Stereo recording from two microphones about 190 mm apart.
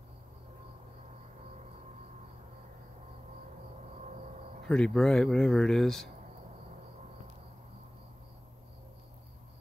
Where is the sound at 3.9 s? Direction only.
40° right (ahead or behind).